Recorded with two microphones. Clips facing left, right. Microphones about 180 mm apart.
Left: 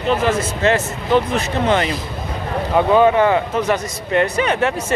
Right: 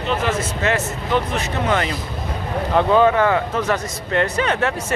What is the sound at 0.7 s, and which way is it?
Speech, 30° left (ahead or behind).